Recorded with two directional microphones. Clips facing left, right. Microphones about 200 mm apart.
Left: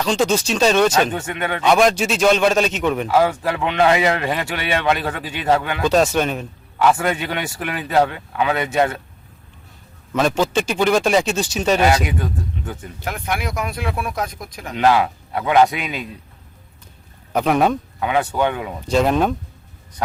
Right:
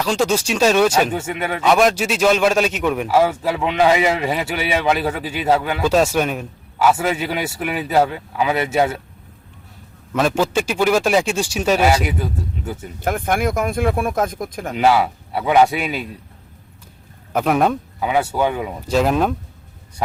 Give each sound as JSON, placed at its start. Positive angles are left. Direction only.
{"t": 0.0, "sound": "speech", "side_deg": -5}
{"t": 10.2, "sound": "speech", "side_deg": -5}
{"t": 13.0, "sound": "speech", "side_deg": -50}
{"t": 14.8, "sound": "speech", "side_deg": -5}
{"t": 17.3, "sound": "speech", "side_deg": 0}